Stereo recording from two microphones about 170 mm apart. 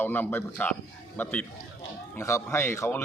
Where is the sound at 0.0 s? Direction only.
10° left (ahead or behind).